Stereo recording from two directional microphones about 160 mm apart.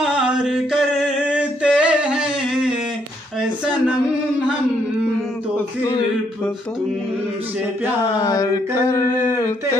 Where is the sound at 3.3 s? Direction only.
5° right (ahead or behind).